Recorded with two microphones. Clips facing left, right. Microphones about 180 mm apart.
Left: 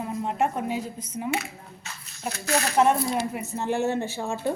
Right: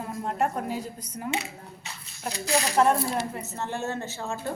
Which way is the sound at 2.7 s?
5° left (ahead or behind).